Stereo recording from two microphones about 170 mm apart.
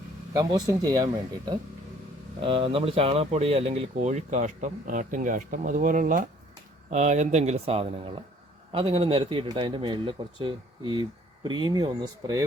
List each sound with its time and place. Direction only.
0.3 s a man's voice: 20° right (ahead or behind)